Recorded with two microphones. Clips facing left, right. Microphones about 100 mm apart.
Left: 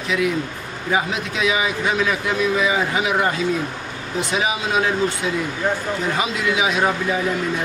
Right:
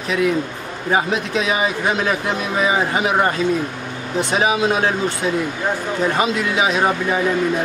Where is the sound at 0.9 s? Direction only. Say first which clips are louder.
Right 3 dB; 40° right (ahead or behind).